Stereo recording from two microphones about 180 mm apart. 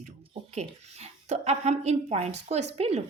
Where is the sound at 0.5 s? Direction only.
35° right (ahead or behind).